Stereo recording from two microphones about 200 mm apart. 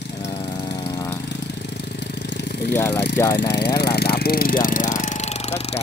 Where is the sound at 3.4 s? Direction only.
55° left (ahead or behind).